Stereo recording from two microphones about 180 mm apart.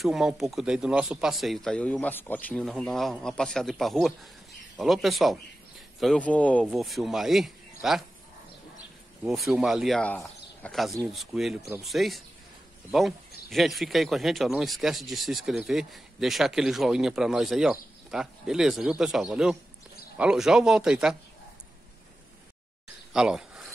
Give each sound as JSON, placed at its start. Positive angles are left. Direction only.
{"t": 0.0, "sound": "speech", "side_deg": 0}
{"t": 9.2, "sound": "speech", "side_deg": -5}
{"t": 23.1, "sound": "a sound", "side_deg": -5}